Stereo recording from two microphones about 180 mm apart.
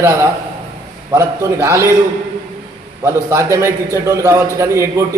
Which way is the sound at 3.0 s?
15° right (ahead or behind).